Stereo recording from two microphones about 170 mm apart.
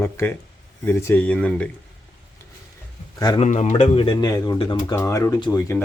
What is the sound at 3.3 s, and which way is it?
Speech, 45° left (ahead or behind).